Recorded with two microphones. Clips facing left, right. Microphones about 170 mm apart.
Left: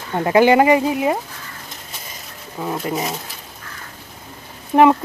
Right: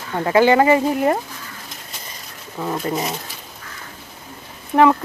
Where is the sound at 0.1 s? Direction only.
20° left (ahead or behind).